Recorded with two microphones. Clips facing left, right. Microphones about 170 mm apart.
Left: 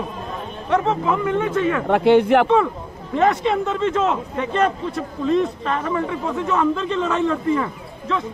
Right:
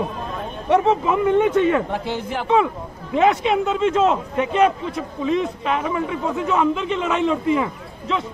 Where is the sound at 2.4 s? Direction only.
10° right (ahead or behind).